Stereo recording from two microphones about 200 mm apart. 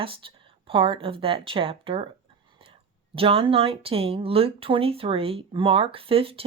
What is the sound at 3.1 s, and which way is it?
Speech, 25° right (ahead or behind).